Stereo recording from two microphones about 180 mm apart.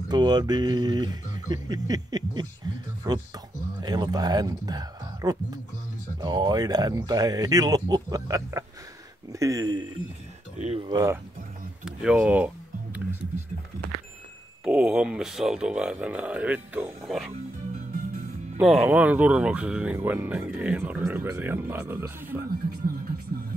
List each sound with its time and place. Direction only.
0.1 s speech: 25° right (ahead or behind)
10.6 s speech: 30° right (ahead or behind)
11.8 s a sound: 5° right (ahead or behind)
14.6 s speech: 5° right (ahead or behind)
18.6 s speech: 5° right (ahead or behind)